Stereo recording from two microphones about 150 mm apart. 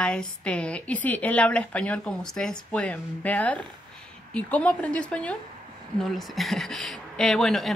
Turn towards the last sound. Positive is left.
turn(degrees=0)  # may be behind; listen again after turning